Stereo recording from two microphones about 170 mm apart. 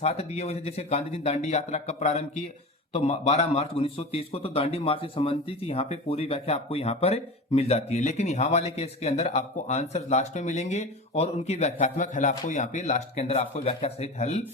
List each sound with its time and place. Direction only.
0.0 s speech: 40° left (ahead or behind)